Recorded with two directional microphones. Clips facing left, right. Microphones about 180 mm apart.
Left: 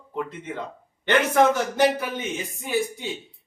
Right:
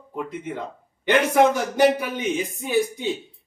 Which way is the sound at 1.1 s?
10° right (ahead or behind).